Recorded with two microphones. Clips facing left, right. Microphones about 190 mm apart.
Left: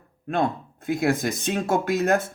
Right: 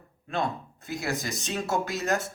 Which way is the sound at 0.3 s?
55° left (ahead or behind).